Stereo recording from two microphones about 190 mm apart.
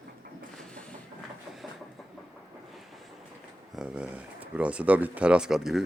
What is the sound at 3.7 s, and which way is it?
Speech, 5° right (ahead or behind).